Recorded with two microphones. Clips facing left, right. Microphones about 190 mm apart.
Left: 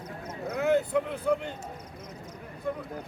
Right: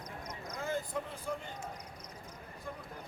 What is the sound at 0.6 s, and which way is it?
Speech, 70° left (ahead or behind).